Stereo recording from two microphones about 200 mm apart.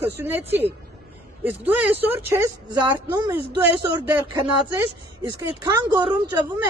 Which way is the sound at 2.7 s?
20° right (ahead or behind).